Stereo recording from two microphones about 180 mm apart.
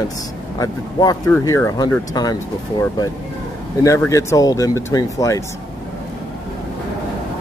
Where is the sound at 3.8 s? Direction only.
15° left (ahead or behind).